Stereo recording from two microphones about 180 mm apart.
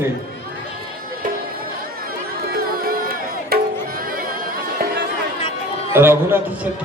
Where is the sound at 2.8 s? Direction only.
55° right (ahead or behind).